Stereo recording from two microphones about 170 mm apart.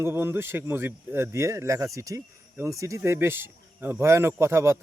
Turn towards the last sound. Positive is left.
turn(degrees=-15)  # may be behind; listen again after turning